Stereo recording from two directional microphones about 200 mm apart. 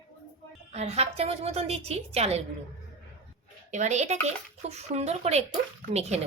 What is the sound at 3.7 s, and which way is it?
Speech, 35° right (ahead or behind).